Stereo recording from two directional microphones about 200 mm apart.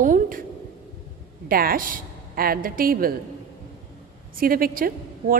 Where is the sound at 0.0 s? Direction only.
40° right (ahead or behind).